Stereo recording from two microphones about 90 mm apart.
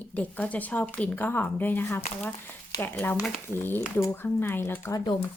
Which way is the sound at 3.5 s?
25° left (ahead or behind).